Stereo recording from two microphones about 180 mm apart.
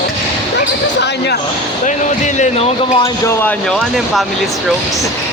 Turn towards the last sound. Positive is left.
turn(degrees=10)  # may be behind; listen again after turning